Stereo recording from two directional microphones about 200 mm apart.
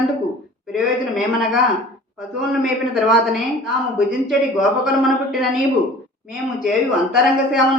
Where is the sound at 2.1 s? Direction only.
Centre (ahead or behind).